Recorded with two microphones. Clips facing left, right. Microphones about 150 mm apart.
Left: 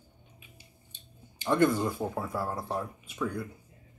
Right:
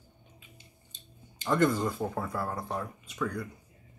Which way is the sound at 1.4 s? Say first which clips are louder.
Left 1 dB; 10° left (ahead or behind).